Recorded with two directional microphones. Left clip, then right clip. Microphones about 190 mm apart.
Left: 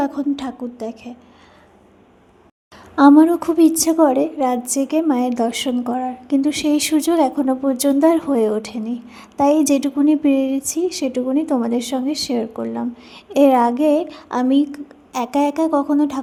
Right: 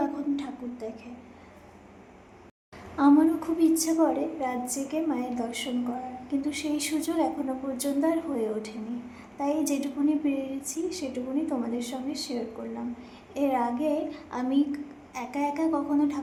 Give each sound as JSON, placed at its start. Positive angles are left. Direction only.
{"t": 0.0, "sound": "a woman's voice", "side_deg": 45}
{"t": 2.9, "sound": "a woman's voice", "side_deg": 50}